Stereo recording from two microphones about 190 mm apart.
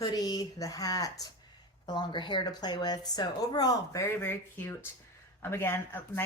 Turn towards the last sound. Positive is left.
turn(degrees=10)  # may be behind; listen again after turning